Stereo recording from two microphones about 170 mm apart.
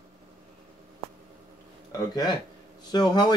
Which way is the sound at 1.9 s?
20° left (ahead or behind).